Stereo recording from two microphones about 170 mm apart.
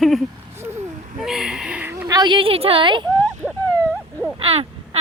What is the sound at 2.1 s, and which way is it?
Speech, 25° right (ahead or behind).